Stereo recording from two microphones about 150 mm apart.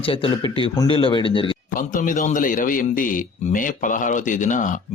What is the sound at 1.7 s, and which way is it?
A man's voice, 60° left (ahead or behind).